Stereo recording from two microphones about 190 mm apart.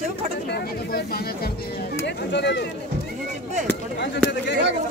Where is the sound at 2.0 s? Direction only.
65° left (ahead or behind).